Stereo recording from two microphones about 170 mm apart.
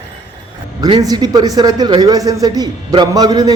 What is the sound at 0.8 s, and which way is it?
A man's voice, 20° right (ahead or behind).